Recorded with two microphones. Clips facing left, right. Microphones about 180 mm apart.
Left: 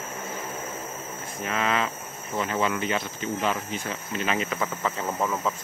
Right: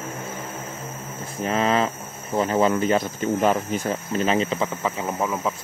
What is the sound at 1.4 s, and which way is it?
Cricket, 35° right (ahead or behind).